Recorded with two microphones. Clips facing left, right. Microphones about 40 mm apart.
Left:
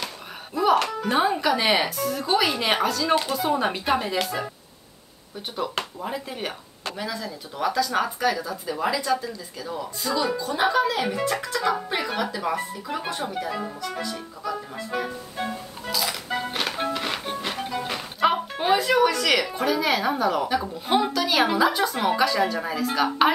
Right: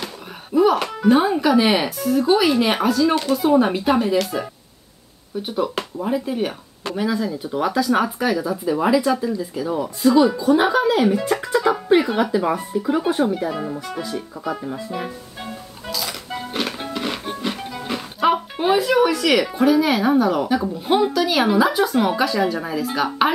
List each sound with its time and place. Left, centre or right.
0.0 s a sound: centre
0.8 s speech: centre
5.5 s speech: centre
15.9 s speech: centre